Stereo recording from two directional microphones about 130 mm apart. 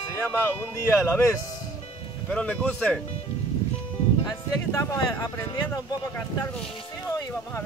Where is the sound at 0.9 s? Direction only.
20° left (ahead or behind).